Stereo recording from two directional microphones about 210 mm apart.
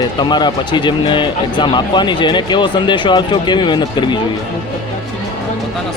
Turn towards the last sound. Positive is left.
turn(degrees=20)  # may be behind; listen again after turning